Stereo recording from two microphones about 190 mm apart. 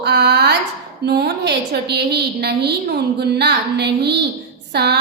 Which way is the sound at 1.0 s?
60° right (ahead or behind).